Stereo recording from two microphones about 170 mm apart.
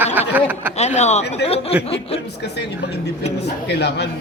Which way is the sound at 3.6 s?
80° left.